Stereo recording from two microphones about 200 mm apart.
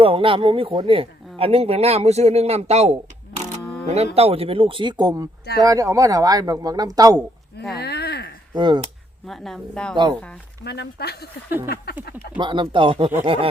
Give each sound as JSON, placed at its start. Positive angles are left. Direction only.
{"t": 0.0, "sound": "speech", "side_deg": -25}
{"t": 3.6, "sound": "camera", "side_deg": 5}
{"t": 3.8, "sound": "speech", "side_deg": -30}
{"t": 7.2, "sound": "speech", "side_deg": 0}
{"t": 7.8, "sound": "a sound", "side_deg": 55}
{"t": 8.5, "sound": "speech", "side_deg": -20}
{"t": 9.2, "sound": "a woman's voice", "side_deg": 0}
{"t": 9.9, "sound": "speech", "side_deg": -20}
{"t": 10.6, "sound": "speech", "side_deg": 55}
{"t": 12.4, "sound": "speech", "side_deg": -25}